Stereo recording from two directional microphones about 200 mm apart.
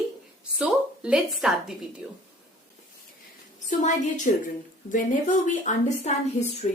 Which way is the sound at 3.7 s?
40° left (ahead or behind).